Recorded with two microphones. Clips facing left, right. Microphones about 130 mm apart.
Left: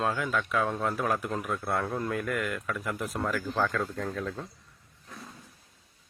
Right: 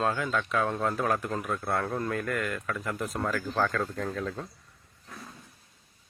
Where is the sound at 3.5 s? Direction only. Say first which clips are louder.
Right 2 dB; centre (ahead or behind).